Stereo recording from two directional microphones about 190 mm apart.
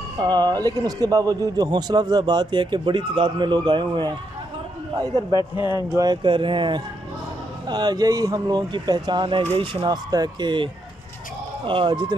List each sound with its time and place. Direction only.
0.2 s a man's voice: 20° right (ahead or behind)
5.4 s speech: 25° left (ahead or behind)
5.8 s a man's voice: 20° right (ahead or behind)